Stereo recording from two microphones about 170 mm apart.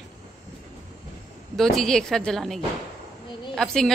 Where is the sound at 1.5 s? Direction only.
Centre (ahead or behind).